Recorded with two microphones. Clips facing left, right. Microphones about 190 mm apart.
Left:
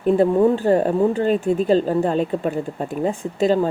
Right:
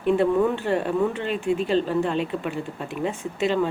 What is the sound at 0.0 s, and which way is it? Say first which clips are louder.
Speech: left 4 dB; 40° left (ahead or behind).